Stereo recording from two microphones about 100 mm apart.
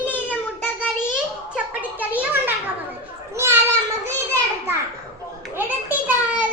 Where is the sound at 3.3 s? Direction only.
25° right (ahead or behind).